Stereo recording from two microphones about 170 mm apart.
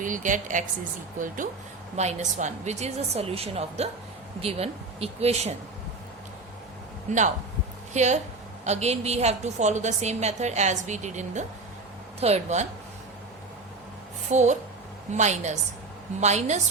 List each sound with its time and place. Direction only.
0.0 s a woman's voice: 50° right (ahead or behind)
2.0 s a woman's voice: 40° right (ahead or behind)
7.1 s a woman's voice: 45° right (ahead or behind)
14.3 s a woman's voice: 45° right (ahead or behind)